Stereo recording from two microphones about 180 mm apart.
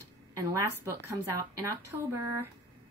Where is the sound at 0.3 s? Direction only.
15° right (ahead or behind).